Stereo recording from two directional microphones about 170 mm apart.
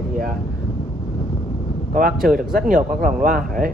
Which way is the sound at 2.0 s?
55° right (ahead or behind).